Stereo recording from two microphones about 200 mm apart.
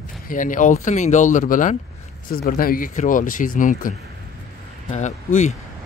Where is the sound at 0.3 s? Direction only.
40° left (ahead or behind).